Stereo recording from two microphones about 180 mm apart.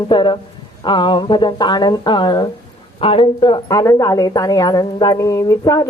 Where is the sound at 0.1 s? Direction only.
25° left (ahead or behind).